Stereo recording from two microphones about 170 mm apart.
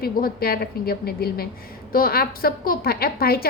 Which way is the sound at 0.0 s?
60° left (ahead or behind).